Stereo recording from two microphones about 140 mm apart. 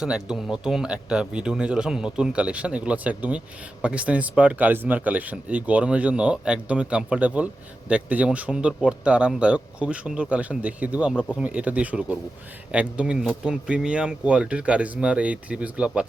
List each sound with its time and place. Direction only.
0.0 s speech: 5° right (ahead or behind)